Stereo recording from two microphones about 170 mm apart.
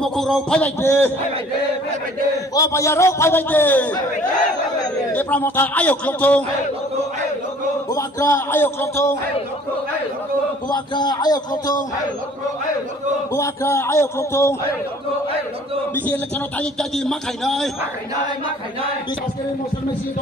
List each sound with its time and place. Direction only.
0.0 s a man's voice: centre (ahead or behind)
2.5 s a man's voice: 20° left (ahead or behind)
5.1 s a man's voice: 10° left (ahead or behind)
7.9 s a man's voice: 15° left (ahead or behind)
10.7 s a man's voice: 25° left (ahead or behind)
13.3 s a man's voice: 15° left (ahead or behind)
16.1 s a man's voice: 5° left (ahead or behind)